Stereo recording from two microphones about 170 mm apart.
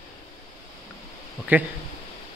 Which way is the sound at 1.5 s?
10° right (ahead or behind).